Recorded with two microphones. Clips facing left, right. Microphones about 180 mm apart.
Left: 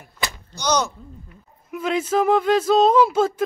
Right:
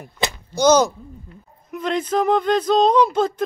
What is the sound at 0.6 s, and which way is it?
Speech, 45° right (ahead or behind).